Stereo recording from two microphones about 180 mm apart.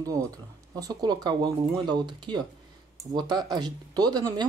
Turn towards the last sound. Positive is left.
turn(degrees=-20)  # may be behind; listen again after turning